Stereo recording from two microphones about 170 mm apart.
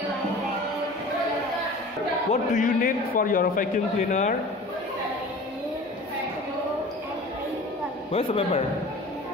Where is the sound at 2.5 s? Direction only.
55° left (ahead or behind).